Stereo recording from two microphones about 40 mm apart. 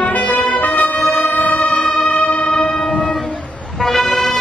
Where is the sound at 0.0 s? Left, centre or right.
Left.